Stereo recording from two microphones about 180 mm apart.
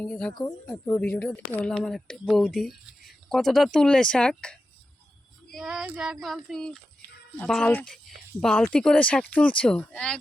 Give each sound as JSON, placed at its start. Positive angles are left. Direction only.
{"t": 0.0, "sound": "speech", "side_deg": 5}
{"t": 5.5, "sound": "speech", "side_deg": 0}